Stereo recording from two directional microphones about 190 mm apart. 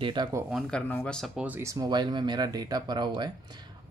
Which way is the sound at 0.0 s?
25° right (ahead or behind).